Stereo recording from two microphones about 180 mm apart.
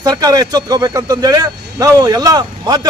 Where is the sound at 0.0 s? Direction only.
20° right (ahead or behind).